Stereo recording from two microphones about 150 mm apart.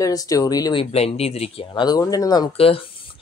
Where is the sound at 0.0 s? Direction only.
25° left (ahead or behind).